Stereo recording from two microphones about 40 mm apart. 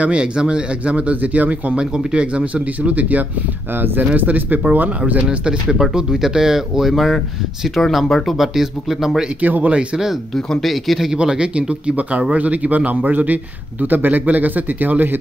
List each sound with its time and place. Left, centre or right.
0.0 s a man's voice: right
1.8 s a man's voice: right
2.4 s speech: right
3.7 s a man's voice: right
5.4 s a man's voice: right
9.4 s a man's voice: right
10.6 s speech: centre
11.1 s a man's voice: right